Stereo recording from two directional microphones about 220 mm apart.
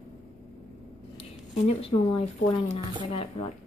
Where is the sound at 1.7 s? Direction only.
25° left (ahead or behind).